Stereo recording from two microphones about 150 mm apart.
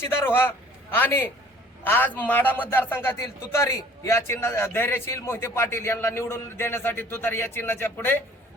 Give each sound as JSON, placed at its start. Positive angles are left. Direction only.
{"t": 0.2, "sound": "a man's voice", "side_deg": 15}